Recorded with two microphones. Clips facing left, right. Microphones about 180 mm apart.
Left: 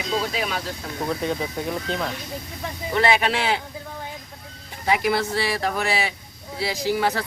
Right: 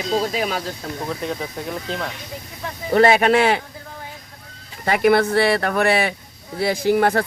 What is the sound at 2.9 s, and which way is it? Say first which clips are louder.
Speech: right 7 dB; 45° right (ahead or behind).